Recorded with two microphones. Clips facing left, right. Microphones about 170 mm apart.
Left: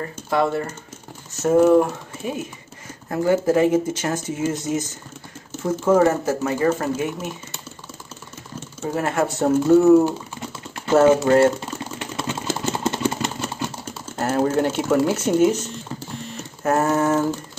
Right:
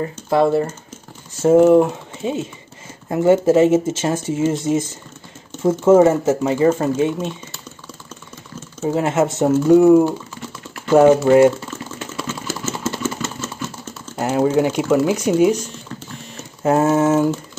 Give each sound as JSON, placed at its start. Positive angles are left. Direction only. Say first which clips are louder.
{"t": 0.0, "sound": "speech", "louder": "right 5 dB", "side_deg": -25}
{"t": 8.9, "sound": "speech", "louder": "right 4 dB", "side_deg": -20}
{"t": 12.0, "sound": "engine", "louder": "even", "side_deg": 20}
{"t": 14.1, "sound": "speech", "louder": "right 3 dB", "side_deg": -10}
{"t": 16.6, "sound": "speech", "louder": "right 4 dB", "side_deg": -20}